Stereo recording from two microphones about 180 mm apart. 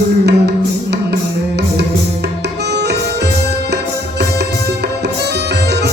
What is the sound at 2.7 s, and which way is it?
Music, 70° right (ahead or behind).